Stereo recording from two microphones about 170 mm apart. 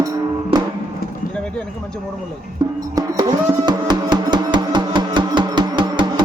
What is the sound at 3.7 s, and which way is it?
Music, 25° right (ahead or behind).